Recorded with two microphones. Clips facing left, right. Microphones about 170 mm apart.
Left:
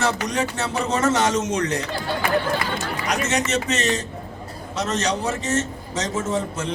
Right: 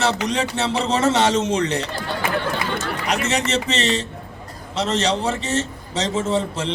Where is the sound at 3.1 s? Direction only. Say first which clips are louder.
Right 1 dB; 30° right (ahead or behind).